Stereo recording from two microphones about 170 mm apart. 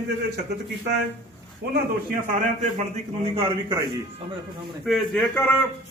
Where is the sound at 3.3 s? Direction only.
25° right (ahead or behind).